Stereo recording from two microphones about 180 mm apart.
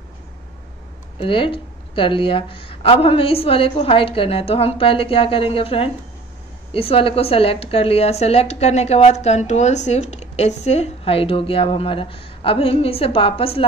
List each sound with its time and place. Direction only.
1.1 s speech: 30° left (ahead or behind)